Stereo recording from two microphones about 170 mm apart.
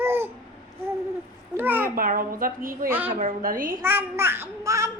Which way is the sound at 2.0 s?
55° right (ahead or behind).